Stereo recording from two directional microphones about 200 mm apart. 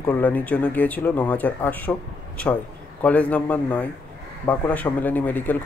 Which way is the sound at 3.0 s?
5° left (ahead or behind).